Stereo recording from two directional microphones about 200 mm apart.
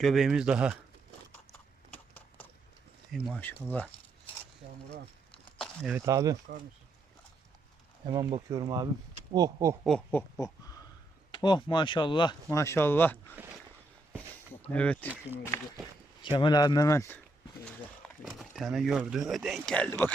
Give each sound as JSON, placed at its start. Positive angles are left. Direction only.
{"t": 0.0, "sound": "speech", "side_deg": 0}
{"t": 3.1, "sound": "speech", "side_deg": 0}
{"t": 5.9, "sound": "speech", "side_deg": -15}
{"t": 8.0, "sound": "speech", "side_deg": -20}
{"t": 9.8, "sound": "a sound", "side_deg": 5}
{"t": 11.3, "sound": "speech", "side_deg": 20}
{"t": 13.3, "sound": "a sound", "side_deg": -10}
{"t": 14.7, "sound": "speech", "side_deg": 5}
{"t": 16.2, "sound": "speech", "side_deg": 25}
{"t": 18.2, "sound": "speech", "side_deg": 0}